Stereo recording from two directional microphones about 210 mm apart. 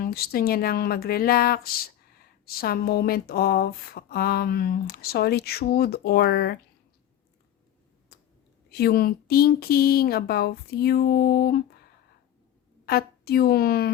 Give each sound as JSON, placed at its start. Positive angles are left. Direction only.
{"t": 0.0, "sound": "speech", "side_deg": 45}
{"t": 8.1, "sound": "a sound", "side_deg": 50}
{"t": 8.7, "sound": "speech", "side_deg": 50}
{"t": 12.8, "sound": "a woman's voice", "side_deg": 45}